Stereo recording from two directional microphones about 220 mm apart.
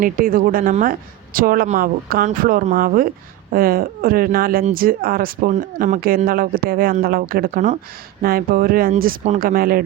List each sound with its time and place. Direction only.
0.0 s a woman's voice: 40° right (ahead or behind)